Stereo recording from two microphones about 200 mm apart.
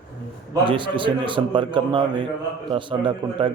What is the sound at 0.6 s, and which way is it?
A man's voice, 25° right (ahead or behind).